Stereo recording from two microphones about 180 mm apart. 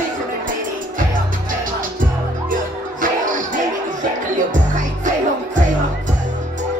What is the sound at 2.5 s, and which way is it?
Music, 50° right (ahead or behind).